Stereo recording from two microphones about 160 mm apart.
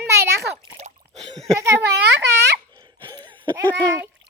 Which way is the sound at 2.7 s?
25° right (ahead or behind).